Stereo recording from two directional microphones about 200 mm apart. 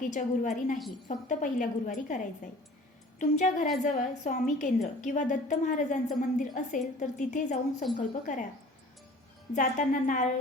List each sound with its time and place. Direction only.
0.0 s a woman's voice: 40° left (ahead or behind)
9.5 s a woman's voice: 40° left (ahead or behind)